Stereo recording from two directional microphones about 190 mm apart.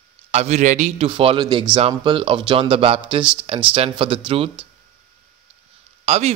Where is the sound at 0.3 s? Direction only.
35° right (ahead or behind).